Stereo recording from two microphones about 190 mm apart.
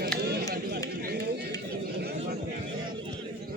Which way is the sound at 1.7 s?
55° right (ahead or behind).